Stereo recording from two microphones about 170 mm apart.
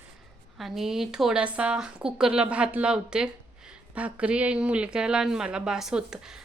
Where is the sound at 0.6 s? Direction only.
Centre (ahead or behind).